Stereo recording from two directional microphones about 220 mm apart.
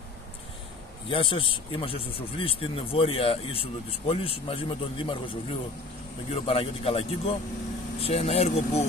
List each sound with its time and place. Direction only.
1.0 s speech: 25° left (ahead or behind)